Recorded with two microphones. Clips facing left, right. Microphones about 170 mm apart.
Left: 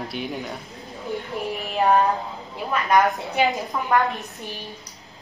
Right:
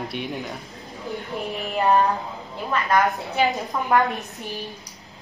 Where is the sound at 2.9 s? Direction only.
20° left (ahead or behind).